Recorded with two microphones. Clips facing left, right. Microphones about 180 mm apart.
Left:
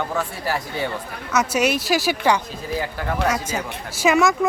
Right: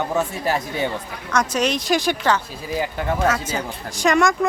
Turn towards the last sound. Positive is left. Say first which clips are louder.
# even
turn(degrees=5)  # may be behind; listen again after turning